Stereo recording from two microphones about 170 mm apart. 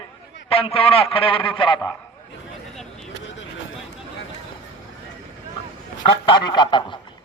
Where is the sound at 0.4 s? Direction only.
35° left (ahead or behind).